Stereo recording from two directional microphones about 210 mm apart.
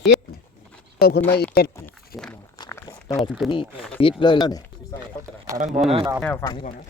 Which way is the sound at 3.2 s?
Centre (ahead or behind).